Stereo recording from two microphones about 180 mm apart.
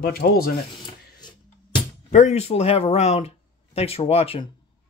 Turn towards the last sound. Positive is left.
turn(degrees=35)  # may be behind; listen again after turning